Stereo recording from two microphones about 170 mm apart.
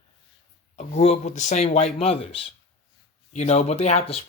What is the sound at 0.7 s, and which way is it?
Speech, 40° left (ahead or behind).